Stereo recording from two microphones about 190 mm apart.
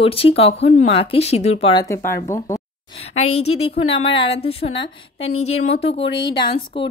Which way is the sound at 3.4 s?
30° left (ahead or behind).